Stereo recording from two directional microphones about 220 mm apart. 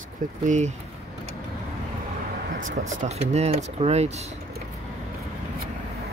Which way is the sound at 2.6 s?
35° right (ahead or behind).